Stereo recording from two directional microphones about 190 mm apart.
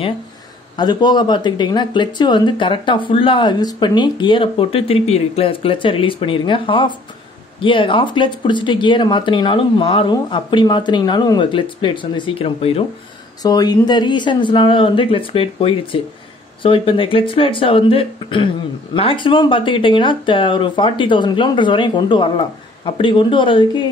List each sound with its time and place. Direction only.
0.7 s speech: 20° left (ahead or behind)
13.4 s speech: 20° left (ahead or behind)